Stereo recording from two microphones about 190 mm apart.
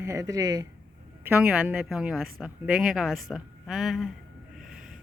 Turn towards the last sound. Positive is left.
turn(degrees=0)  # may be behind; listen again after turning